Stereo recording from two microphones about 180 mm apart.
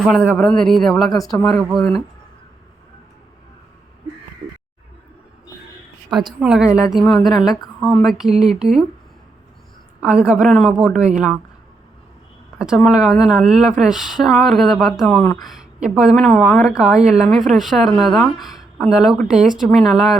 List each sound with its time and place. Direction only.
0.1 s a woman's voice: centre (ahead or behind)
6.4 s a woman's voice: 5° right (ahead or behind)
6.7 s a woman's voice: 20° left (ahead or behind)
6.9 s a woman's voice: 5° left (ahead or behind)
10.0 s a woman's voice: 5° right (ahead or behind)
12.5 s a woman's voice: 5° right (ahead or behind)